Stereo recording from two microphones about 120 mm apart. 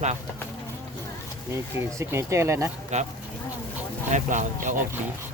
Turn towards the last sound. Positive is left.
turn(degrees=-90)